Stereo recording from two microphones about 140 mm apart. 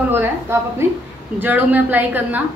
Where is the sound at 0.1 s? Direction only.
15° right (ahead or behind).